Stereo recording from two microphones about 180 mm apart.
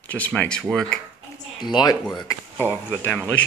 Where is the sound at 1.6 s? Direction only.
25° left (ahead or behind).